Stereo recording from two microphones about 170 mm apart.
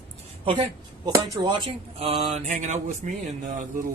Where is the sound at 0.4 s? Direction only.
35° right (ahead or behind).